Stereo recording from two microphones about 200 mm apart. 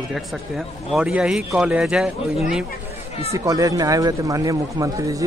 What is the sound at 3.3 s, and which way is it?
A man's voice, 15° right (ahead or behind).